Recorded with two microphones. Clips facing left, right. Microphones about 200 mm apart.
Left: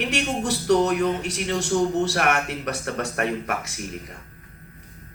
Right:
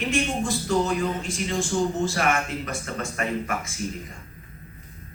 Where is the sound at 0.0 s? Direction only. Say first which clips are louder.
Even; 70° left (ahead or behind).